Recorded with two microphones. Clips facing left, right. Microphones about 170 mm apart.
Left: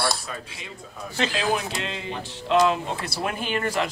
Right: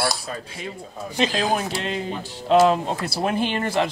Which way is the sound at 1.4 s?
40° right (ahead or behind).